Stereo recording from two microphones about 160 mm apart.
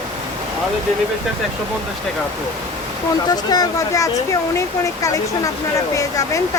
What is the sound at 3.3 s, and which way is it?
Speech, 25° left (ahead or behind).